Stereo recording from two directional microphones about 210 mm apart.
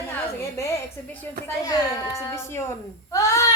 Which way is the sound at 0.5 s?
15° left (ahead or behind).